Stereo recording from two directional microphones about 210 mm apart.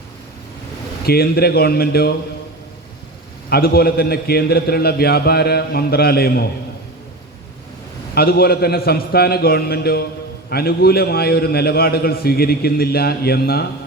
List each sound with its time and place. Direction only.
1.0 s a man's voice: 50° left (ahead or behind)
3.5 s a man's voice: 50° left (ahead or behind)
8.1 s a man's voice: 45° left (ahead or behind)